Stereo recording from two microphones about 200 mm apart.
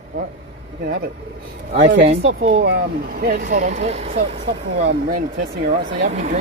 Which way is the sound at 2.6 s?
55° right (ahead or behind).